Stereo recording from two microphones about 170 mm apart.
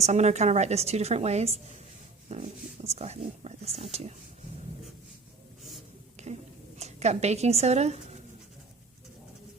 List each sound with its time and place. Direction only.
0.0 s a woman's voice: 40° right (ahead or behind)
6.3 s a woman's voice: 40° right (ahead or behind)